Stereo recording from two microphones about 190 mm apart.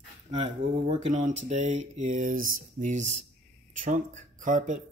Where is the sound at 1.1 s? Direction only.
40° right (ahead or behind).